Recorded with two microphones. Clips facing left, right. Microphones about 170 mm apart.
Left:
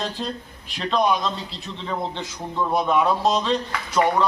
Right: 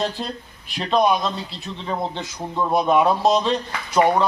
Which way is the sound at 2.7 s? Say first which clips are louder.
Right 3 dB; 15° right (ahead or behind).